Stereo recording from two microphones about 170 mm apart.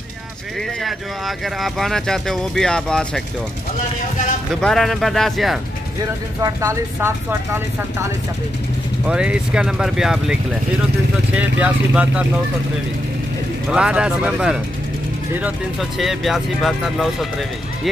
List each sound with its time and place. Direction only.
0.8 s speech: centre (ahead or behind)
4.6 s speech: 5° left (ahead or behind)
6.4 s speech: 20° right (ahead or behind)
11.3 s speech: 10° right (ahead or behind)
13.7 s speech: 5° right (ahead or behind)